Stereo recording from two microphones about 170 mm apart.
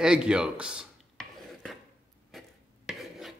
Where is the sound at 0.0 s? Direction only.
5° right (ahead or behind).